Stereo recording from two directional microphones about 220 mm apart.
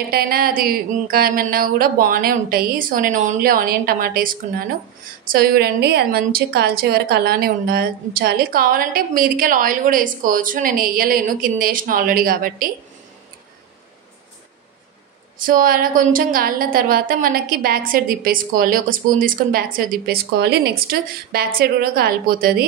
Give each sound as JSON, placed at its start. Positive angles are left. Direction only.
{"t": 0.1, "sound": "a woman's voice", "side_deg": -45}
{"t": 15.4, "sound": "a woman's voice", "side_deg": -40}